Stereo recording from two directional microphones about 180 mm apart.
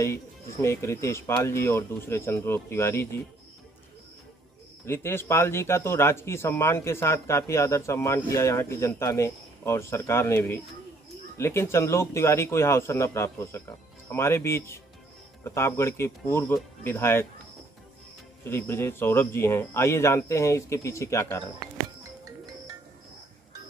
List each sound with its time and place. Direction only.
0.0 s speech: 15° left (ahead or behind)
4.8 s speech: 15° left (ahead or behind)
18.4 s speech: 15° left (ahead or behind)